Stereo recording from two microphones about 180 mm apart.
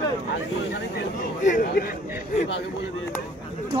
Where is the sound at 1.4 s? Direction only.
50° left (ahead or behind).